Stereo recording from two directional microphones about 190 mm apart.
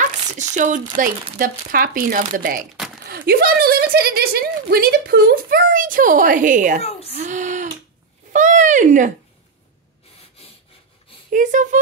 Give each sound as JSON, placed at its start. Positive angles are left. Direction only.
{"t": 0.0, "sound": "a woman's voice", "side_deg": -40}
{"t": 6.8, "sound": "a woman's voice", "side_deg": 35}
{"t": 7.1, "sound": "speech", "side_deg": -40}
{"t": 11.3, "sound": "speech", "side_deg": -40}